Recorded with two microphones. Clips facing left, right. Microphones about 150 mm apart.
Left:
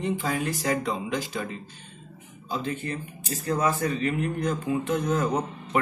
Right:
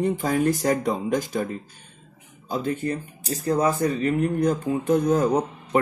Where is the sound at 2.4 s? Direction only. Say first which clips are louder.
Right 5 dB; 40° right (ahead or behind).